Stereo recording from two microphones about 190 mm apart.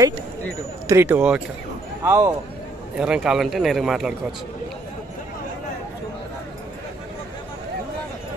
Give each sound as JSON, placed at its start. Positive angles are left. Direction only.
{"t": 0.8, "sound": "speech", "side_deg": -10}
{"t": 2.0, "sound": "speech", "side_deg": -15}
{"t": 3.0, "sound": "speech", "side_deg": -5}